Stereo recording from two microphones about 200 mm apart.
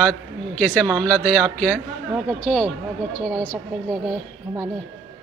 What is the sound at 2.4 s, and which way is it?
Speech, 5° left (ahead or behind).